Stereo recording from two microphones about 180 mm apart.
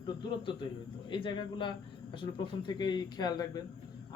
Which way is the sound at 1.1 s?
25° left (ahead or behind).